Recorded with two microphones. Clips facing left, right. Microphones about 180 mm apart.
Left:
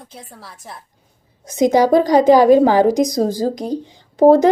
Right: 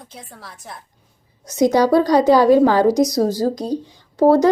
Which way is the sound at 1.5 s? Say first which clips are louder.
Left 1 dB; 20° left (ahead or behind).